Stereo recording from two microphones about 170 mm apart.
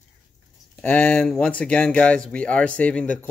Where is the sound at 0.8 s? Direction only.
10° left (ahead or behind).